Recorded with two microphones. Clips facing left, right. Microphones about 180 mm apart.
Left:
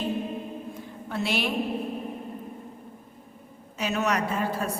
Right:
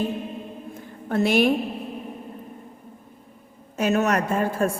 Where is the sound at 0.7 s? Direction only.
50° right (ahead or behind).